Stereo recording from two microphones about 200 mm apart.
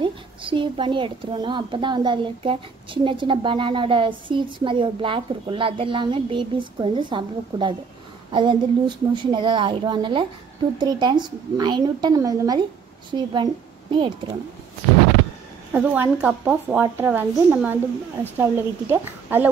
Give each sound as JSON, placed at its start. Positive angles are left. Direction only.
{"t": 0.0, "sound": "a woman's voice", "side_deg": -25}
{"t": 15.7, "sound": "a woman's voice", "side_deg": -10}